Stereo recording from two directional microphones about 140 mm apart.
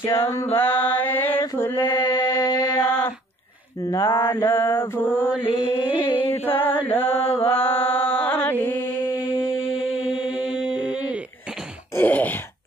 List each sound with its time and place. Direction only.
0.1 s mantra: 20° left (ahead or behind)
1.4 s a sound: 15° left (ahead or behind)
3.9 s mantra: 25° left (ahead or behind)
5.4 s mantra: 40° left (ahead or behind)
6.6 s chant: 15° left (ahead or behind)
7.3 s mantra: 15° left (ahead or behind)
10.5 s a sound: 5° right (ahead or behind)
11.9 s groan: 10° left (ahead or behind)